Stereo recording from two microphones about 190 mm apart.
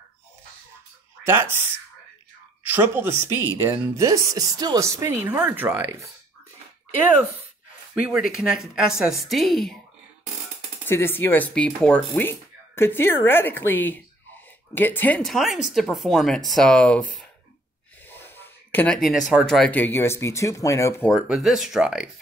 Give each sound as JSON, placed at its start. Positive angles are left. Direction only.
{"t": 1.2, "sound": "speech", "side_deg": -10}
{"t": 8.1, "sound": "speech", "side_deg": -5}
{"t": 10.9, "sound": "speech", "side_deg": 10}
{"t": 18.0, "sound": "snort", "side_deg": 10}
{"t": 19.3, "sound": "speech", "side_deg": 0}
{"t": 21.1, "sound": "speech", "side_deg": 0}